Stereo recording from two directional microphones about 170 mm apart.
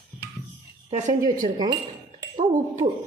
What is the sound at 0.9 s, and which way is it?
A woman's voice, 45° right (ahead or behind).